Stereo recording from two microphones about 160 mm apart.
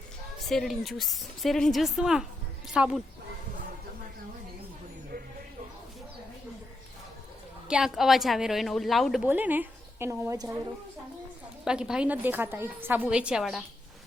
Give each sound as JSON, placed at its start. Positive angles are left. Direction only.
{"t": 0.4, "sound": "a woman's voice", "side_deg": 0}
{"t": 7.7, "sound": "speech", "side_deg": -5}
{"t": 9.2, "sound": "a woman's voice", "side_deg": -10}
{"t": 11.6, "sound": "a woman's voice", "side_deg": -5}